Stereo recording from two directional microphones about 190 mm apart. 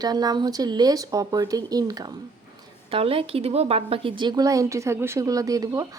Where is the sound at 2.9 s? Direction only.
30° right (ahead or behind).